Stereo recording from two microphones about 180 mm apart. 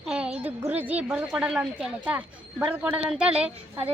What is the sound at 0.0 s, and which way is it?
A woman's voice, 5° right (ahead or behind).